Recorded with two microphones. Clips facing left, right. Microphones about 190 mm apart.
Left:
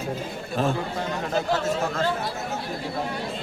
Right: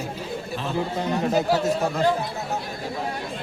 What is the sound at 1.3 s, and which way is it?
Speech, 15° right (ahead or behind).